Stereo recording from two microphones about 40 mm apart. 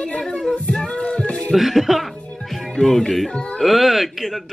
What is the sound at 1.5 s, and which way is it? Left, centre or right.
Speech, centre.